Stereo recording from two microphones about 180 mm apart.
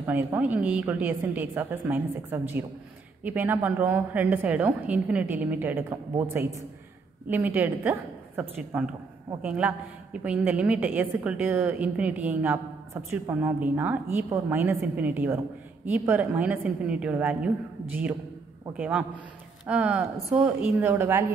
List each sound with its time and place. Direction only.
0.0 s a woman's voice: 10° right (ahead or behind)
7.2 s a woman's voice: 10° right (ahead or behind)
18.8 s a man's voice: 5° right (ahead or behind)